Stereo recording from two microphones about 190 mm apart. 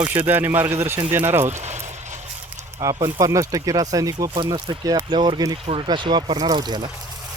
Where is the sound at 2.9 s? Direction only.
20° right (ahead or behind).